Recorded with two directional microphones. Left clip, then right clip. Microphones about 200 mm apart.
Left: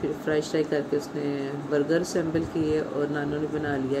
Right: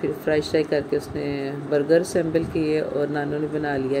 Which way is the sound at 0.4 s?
15° right (ahead or behind).